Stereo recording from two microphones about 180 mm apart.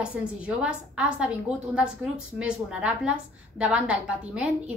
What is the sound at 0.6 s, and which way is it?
A woman's voice, 5° right (ahead or behind).